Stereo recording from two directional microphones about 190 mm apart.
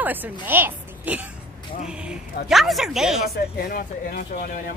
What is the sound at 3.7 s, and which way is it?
Speech, 50° left (ahead or behind).